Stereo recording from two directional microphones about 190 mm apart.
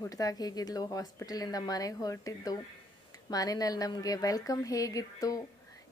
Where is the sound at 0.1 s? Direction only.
20° left (ahead or behind).